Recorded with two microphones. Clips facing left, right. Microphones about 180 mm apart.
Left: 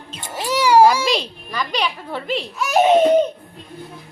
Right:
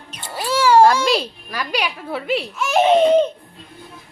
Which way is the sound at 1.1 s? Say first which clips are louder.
Right 1 dB; 5° right (ahead or behind).